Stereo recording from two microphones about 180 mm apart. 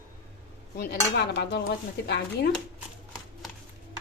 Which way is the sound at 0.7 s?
65° left (ahead or behind).